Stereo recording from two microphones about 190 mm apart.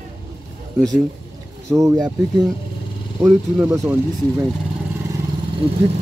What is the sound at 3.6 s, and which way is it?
Speech, 15° right (ahead or behind).